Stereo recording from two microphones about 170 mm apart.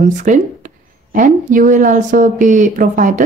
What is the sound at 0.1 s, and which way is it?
Speech, 50° right (ahead or behind).